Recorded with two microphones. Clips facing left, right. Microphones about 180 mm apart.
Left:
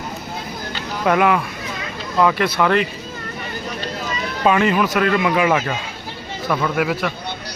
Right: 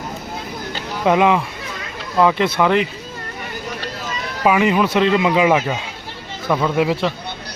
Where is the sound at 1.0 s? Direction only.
20° right (ahead or behind).